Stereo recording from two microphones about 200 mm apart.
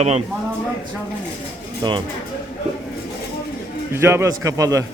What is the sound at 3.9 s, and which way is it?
Speech, 15° right (ahead or behind).